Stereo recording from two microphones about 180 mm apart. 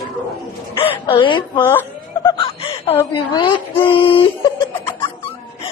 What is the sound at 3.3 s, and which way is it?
Speech, 25° left (ahead or behind).